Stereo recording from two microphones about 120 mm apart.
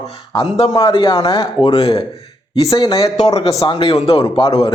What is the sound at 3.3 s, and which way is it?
A man's voice, 55° left (ahead or behind).